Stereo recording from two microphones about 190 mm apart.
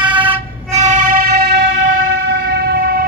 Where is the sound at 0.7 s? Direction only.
40° right (ahead or behind); by 1.7 s 60° right (ahead or behind).